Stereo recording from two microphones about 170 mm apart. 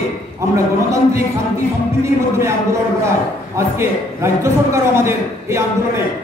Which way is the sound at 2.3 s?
15° right (ahead or behind).